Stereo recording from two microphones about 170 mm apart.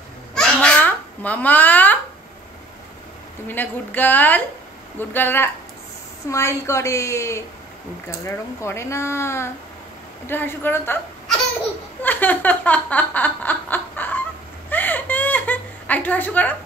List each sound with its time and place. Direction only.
0.3 s babbling: 5° left (ahead or behind)
3.4 s speech: 10° left (ahead or behind)
12.0 s snicker: 10° left (ahead or behind)
14.7 s a sound: 10° left (ahead or behind)